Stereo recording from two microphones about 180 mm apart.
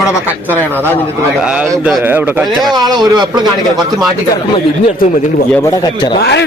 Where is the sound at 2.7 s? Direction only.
20° right (ahead or behind).